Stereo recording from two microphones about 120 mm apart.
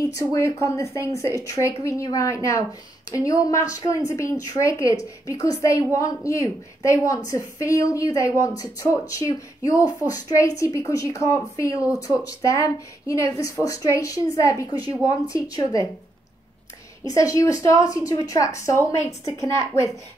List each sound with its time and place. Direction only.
0.3 s a woman's voice: 25° left (ahead or behind)
17.0 s a woman's voice: 30° left (ahead or behind)